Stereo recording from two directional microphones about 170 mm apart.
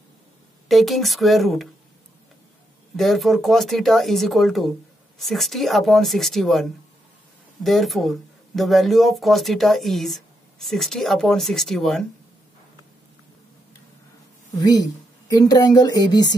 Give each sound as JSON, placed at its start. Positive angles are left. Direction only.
{"t": 0.7, "sound": "speech", "side_deg": 0}
{"t": 3.0, "sound": "speech", "side_deg": 0}
{"t": 14.6, "sound": "speech", "side_deg": 25}